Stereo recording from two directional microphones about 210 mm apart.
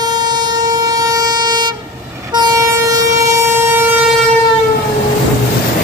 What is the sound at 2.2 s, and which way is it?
Vehicle, 20° right (ahead or behind).